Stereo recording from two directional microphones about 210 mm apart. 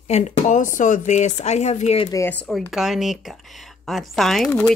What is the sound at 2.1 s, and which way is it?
Speech, 10° left (ahead or behind).